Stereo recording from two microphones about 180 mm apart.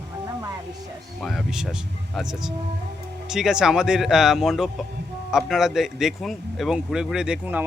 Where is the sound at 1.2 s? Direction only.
Centre (ahead or behind).